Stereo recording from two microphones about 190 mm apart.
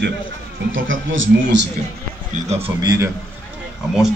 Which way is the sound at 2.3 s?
35° right (ahead or behind).